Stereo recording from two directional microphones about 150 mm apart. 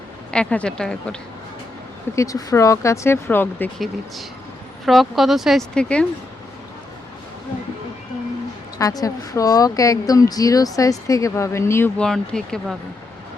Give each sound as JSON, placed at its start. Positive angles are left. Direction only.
{"t": 0.3, "sound": "speech", "side_deg": 5}
{"t": 2.1, "sound": "speech", "side_deg": 25}
{"t": 4.9, "sound": "speech", "side_deg": 0}
{"t": 8.8, "sound": "speech", "side_deg": 25}
{"t": 11.9, "sound": "speech", "side_deg": 5}